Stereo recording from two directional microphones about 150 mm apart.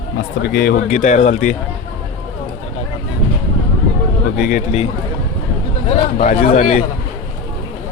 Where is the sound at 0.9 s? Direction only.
55° left (ahead or behind).